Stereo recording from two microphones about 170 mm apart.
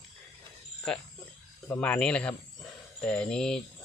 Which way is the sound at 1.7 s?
10° left (ahead or behind).